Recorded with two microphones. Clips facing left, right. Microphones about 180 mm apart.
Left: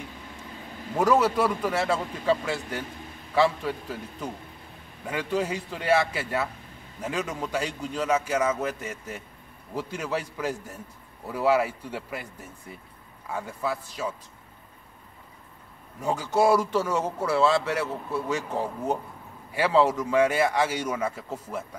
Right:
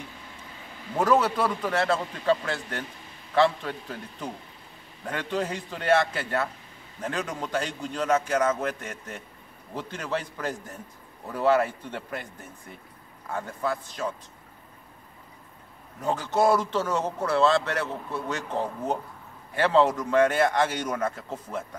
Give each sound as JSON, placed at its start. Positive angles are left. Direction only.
{"t": 0.9, "sound": "speech", "side_deg": 10}
{"t": 16.0, "sound": "speech", "side_deg": 10}